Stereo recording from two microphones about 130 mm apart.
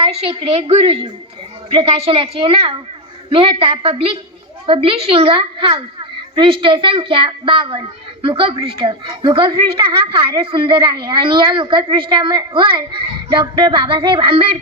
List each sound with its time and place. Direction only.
0.0 s a woman's voice: 50° right (ahead or behind)